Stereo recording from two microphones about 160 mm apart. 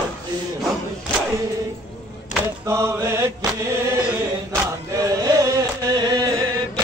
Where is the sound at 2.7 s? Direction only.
15° right (ahead or behind).